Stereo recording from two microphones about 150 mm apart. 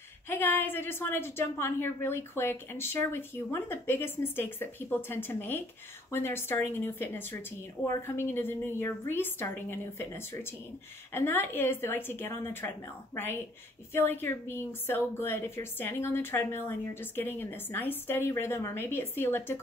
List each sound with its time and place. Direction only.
0.3 s a woman's voice: 15° left (ahead or behind)